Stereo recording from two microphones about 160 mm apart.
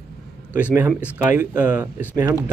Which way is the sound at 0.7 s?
10° right (ahead or behind).